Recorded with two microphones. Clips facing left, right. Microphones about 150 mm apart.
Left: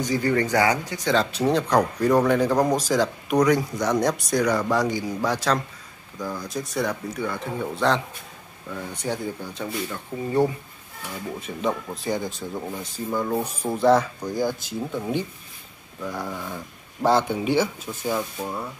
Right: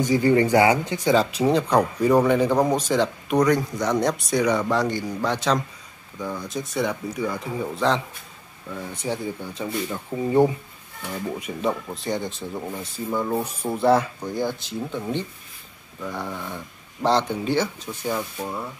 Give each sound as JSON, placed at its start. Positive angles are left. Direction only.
{"t": 0.1, "sound": "speech", "side_deg": -20}
{"t": 1.0, "sound": "speech", "side_deg": -5}
{"t": 9.0, "sound": "speech", "side_deg": 0}
{"t": 9.8, "sound": "speech", "side_deg": -20}
{"t": 11.9, "sound": "speech", "side_deg": 0}